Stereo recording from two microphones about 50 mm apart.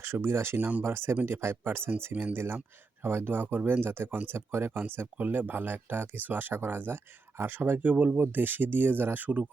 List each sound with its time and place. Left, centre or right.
0.0 s speech: right
0.5 s speech: right
0.9 s speech: right
1.1 s speech: right
5.1 s speech: right
8.2 s speech: right